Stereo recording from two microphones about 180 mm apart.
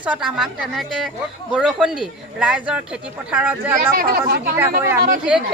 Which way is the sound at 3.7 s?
50° right (ahead or behind).